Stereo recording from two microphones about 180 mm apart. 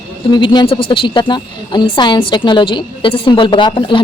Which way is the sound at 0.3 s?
25° left (ahead or behind).